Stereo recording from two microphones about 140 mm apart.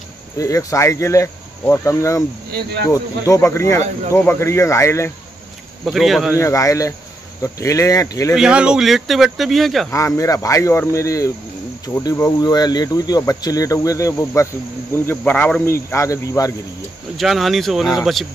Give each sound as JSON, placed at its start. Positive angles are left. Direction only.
{"t": 0.4, "sound": "cricket", "side_deg": 25}
{"t": 5.9, "sound": "speech", "side_deg": 0}
{"t": 6.3, "sound": "cricket", "side_deg": 20}
{"t": 8.4, "sound": "speech", "side_deg": -5}
{"t": 9.8, "sound": "cricket", "side_deg": 20}
{"t": 17.2, "sound": "speech", "side_deg": 0}